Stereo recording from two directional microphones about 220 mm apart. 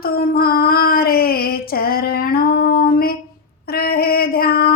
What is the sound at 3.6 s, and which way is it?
Female singing, 45° left (ahead or behind).